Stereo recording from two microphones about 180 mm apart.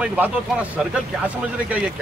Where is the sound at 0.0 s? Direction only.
10° right (ahead or behind).